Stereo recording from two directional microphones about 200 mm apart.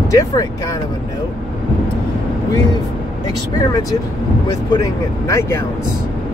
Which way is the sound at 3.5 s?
20° left (ahead or behind).